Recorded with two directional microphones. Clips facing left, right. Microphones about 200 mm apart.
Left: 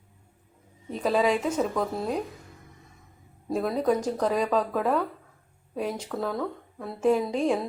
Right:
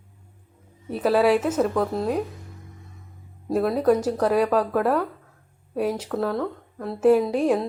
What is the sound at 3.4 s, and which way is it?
A woman's voice, centre (ahead or behind).